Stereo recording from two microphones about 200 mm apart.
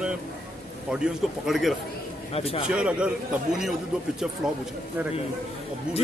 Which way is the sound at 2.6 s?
5° right (ahead or behind).